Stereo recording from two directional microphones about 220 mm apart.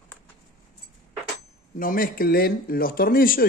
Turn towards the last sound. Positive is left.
turn(degrees=40)  # may be behind; listen again after turning